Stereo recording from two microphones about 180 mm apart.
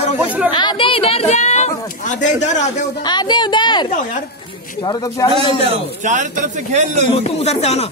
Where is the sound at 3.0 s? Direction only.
25° left (ahead or behind).